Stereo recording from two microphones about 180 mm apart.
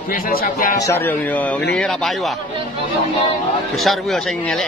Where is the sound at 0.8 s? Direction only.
15° left (ahead or behind).